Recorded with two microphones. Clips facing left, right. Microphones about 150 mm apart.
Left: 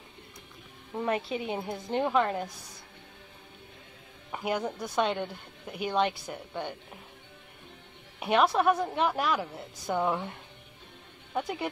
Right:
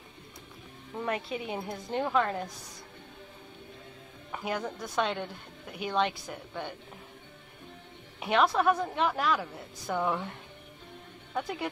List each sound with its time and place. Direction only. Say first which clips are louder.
0.9 s a woman's voice: left 3 dB; 25° left (ahead or behind)
4.3 s a woman's voice: left 3 dB; 15° left (ahead or behind)
8.2 s a woman's voice: left 1 dB; 15° left (ahead or behind)